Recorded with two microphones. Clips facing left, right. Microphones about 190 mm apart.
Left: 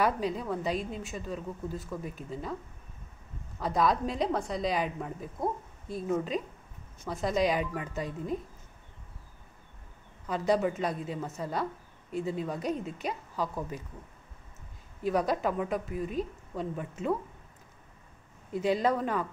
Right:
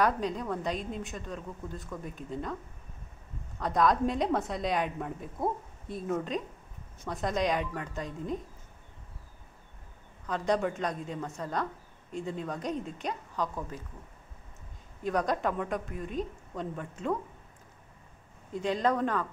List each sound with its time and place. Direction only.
0.0 s a woman's voice: 5° left (ahead or behind)
3.5 s a woman's voice: 5° left (ahead or behind)
10.2 s a woman's voice: 5° left (ahead or behind)
15.0 s a woman's voice: 5° left (ahead or behind)
18.5 s a woman's voice: 10° left (ahead or behind)